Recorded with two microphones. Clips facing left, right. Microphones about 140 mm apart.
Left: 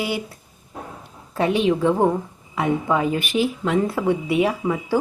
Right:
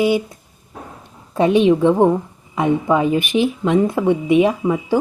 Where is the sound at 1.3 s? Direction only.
20° right (ahead or behind).